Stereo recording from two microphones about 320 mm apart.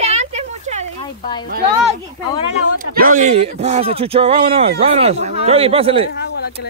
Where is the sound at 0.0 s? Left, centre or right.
Centre.